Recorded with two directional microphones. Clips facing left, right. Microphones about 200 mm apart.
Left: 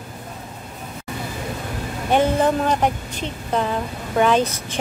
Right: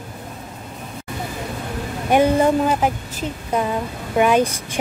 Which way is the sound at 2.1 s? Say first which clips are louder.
Right 2 dB; 10° right (ahead or behind).